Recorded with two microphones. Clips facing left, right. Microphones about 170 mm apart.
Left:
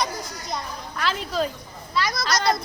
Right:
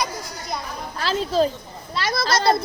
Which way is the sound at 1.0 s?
30° right (ahead or behind).